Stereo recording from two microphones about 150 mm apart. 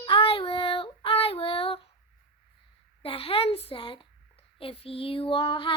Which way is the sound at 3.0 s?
40° left (ahead or behind).